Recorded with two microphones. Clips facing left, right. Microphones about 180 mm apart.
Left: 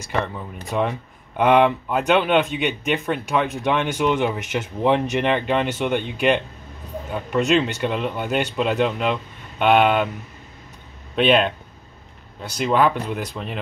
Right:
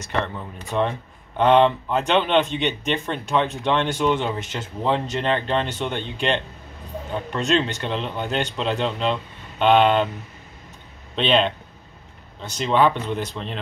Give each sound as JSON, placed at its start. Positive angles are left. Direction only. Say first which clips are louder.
{"t": 0.2, "sound": "speech", "louder": "left 1 dB", "side_deg": 10}
{"t": 11.1, "sound": "speech", "louder": "left 2 dB", "side_deg": 10}